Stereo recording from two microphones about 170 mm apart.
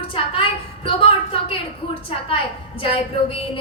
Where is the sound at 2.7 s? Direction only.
35° left (ahead or behind).